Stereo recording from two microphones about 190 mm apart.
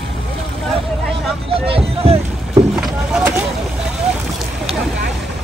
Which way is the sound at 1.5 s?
30° right (ahead or behind).